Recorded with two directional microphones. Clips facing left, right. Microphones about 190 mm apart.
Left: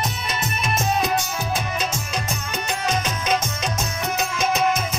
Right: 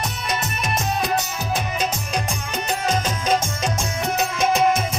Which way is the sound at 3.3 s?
30° right (ahead or behind).